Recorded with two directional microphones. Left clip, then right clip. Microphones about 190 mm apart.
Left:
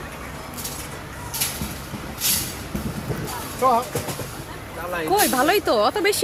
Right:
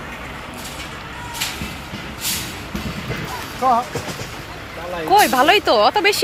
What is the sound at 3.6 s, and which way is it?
Speech, 55° left (ahead or behind).